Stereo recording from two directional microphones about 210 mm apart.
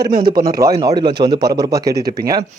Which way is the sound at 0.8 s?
20° right (ahead or behind).